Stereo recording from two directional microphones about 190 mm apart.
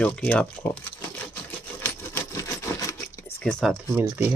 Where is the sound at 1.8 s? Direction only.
15° left (ahead or behind).